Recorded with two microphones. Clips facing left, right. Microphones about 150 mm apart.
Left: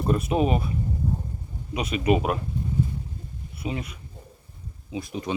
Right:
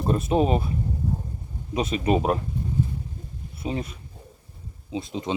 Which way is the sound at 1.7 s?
30° right (ahead or behind).